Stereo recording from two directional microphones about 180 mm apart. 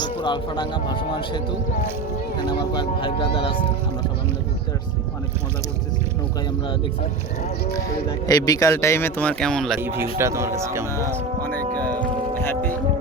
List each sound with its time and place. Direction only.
0.0 s a man's voice: 25° left (ahead or behind)
2.4 s a man's voice: 25° left (ahead or behind)
7.7 s a man's voice: 20° left (ahead or behind); by 9.8 s centre (ahead or behind)
9.8 s speech: 15° right (ahead or behind)
11.8 s music: 10° left (ahead or behind)